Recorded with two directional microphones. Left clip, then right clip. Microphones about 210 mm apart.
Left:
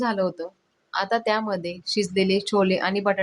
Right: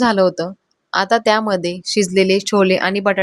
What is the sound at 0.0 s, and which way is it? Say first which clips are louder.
Speech: right 10 dB; 35° right (ahead or behind).